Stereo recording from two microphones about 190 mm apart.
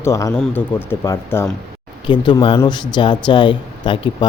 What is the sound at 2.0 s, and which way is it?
Speech, 25° left (ahead or behind).